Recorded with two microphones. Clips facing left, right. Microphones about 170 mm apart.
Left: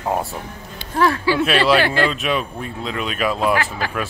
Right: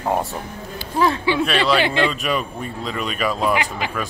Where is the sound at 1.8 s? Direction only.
20° right (ahead or behind).